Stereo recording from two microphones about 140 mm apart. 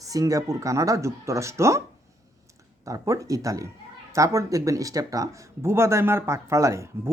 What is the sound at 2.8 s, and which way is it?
Speech, 20° right (ahead or behind).